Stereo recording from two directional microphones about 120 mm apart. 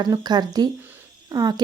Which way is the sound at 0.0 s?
35° right (ahead or behind).